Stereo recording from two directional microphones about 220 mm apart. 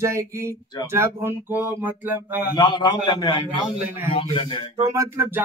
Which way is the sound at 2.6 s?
20° left (ahead or behind).